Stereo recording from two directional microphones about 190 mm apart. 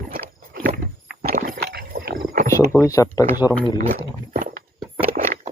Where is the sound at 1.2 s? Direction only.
50° right (ahead or behind).